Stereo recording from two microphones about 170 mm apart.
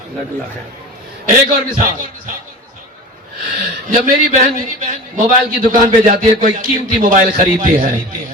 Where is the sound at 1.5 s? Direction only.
50° right (ahead or behind).